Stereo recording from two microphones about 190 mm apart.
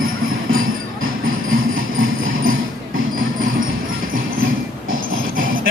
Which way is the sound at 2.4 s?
45° right (ahead or behind).